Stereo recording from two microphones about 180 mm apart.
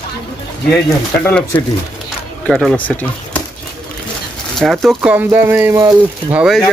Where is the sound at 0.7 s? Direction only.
10° left (ahead or behind).